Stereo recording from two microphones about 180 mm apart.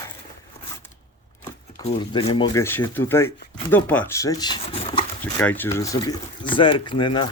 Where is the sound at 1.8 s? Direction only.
30° left (ahead or behind).